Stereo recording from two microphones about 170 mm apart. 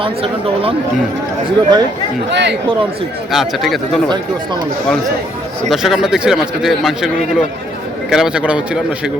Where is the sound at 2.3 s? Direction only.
90° right.